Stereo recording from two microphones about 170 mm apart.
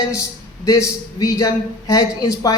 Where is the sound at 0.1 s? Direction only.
20° left (ahead or behind).